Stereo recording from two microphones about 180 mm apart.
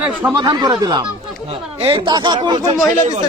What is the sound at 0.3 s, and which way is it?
Speech, 25° right (ahead or behind).